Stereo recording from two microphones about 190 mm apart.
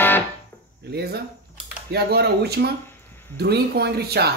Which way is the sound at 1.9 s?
60° right (ahead or behind).